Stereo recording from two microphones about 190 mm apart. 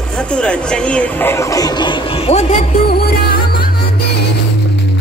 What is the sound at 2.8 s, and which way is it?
Music, 55° left (ahead or behind).